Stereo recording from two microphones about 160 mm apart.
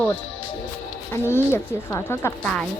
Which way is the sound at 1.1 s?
15° left (ahead or behind).